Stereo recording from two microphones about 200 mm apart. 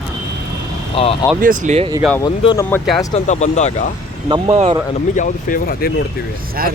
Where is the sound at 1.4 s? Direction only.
40° right (ahead or behind).